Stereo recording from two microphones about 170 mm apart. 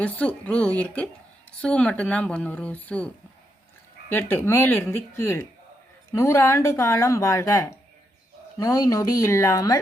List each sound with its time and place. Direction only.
0.0 s speech: 10° left (ahead or behind)
4.1 s speech: 10° left (ahead or behind)